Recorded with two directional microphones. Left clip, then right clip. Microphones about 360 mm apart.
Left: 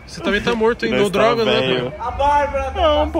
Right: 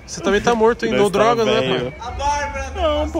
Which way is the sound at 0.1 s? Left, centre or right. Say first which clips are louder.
Right 2 dB; centre.